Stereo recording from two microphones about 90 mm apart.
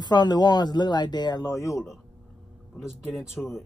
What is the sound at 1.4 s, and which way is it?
Speech, 35° left (ahead or behind).